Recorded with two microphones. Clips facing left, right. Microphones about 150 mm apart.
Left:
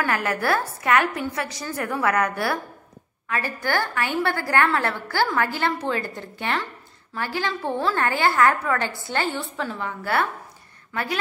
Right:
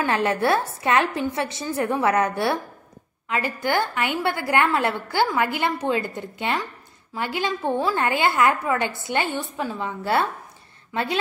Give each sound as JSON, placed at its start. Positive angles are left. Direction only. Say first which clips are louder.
{"t": 0.0, "sound": "a woman's voice", "louder": "right 3 dB", "side_deg": -25}